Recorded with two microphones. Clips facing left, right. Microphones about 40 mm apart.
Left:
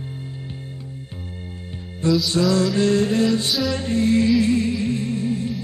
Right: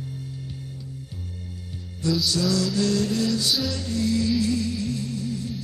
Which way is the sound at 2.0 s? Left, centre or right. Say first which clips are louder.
Left 5 dB; left.